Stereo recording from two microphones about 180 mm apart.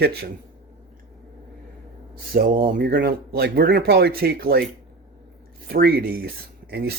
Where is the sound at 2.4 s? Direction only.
50° right (ahead or behind).